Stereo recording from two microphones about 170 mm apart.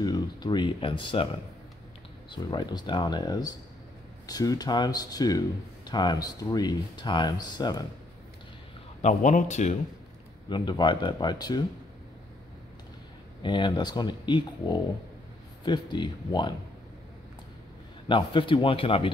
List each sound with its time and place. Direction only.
0.0 s speech: 25° left (ahead or behind)
2.3 s speech: 25° left (ahead or behind)
9.0 s speech: 45° left (ahead or behind)
10.5 s speech: 25° left (ahead or behind)
13.4 s speech: 30° left (ahead or behind)
18.0 s speech: 30° left (ahead or behind)